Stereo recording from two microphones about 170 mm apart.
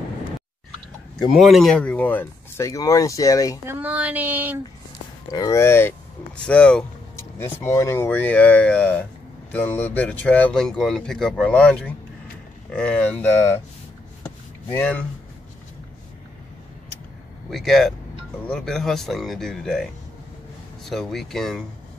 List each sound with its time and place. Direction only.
1.3 s speech: centre (ahead or behind); by 3.5 s 20° left (ahead or behind)
3.6 s child singing: 10° right (ahead or behind)
5.3 s speech: 20° left (ahead or behind)
14.7 s speech: 10° left (ahead or behind)
17.5 s speech: centre (ahead or behind)